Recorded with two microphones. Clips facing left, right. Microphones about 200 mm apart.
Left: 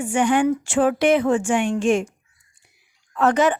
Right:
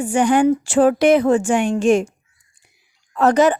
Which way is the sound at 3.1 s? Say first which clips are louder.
Right 4 dB; 40° right (ahead or behind).